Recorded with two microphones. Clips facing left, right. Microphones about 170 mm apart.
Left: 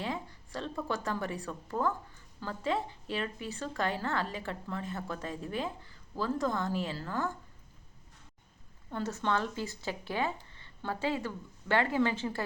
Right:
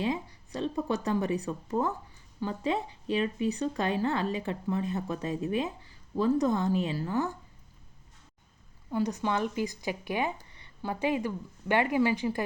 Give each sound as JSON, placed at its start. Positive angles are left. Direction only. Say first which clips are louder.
{"t": 0.0, "sound": "a woman's voice", "louder": "right 6 dB", "side_deg": -20}
{"t": 8.9, "sound": "speech", "louder": "right 3 dB", "side_deg": -15}
{"t": 10.5, "sound": "a sound", "louder": "right 2 dB", "side_deg": -15}
{"t": 11.7, "sound": "speech", "louder": "right 3 dB", "side_deg": -15}